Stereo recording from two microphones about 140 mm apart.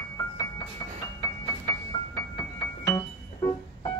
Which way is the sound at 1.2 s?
25° left (ahead or behind).